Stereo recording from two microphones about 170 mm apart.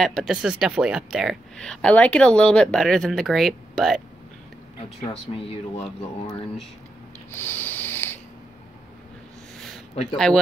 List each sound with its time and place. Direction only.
0.0 s speech: centre (ahead or behind)
5.3 s speech: 30° left (ahead or behind)
7.2 s a sound: 10° left (ahead or behind)
10.1 s speech: 5° left (ahead or behind)